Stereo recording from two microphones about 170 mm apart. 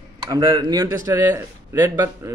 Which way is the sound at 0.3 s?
20° right (ahead or behind).